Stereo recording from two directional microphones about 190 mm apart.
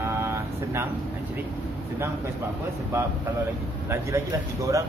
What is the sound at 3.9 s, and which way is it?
Speech, 15° right (ahead or behind).